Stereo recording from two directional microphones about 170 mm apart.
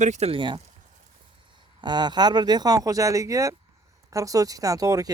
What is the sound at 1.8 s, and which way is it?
Speech, 25° right (ahead or behind).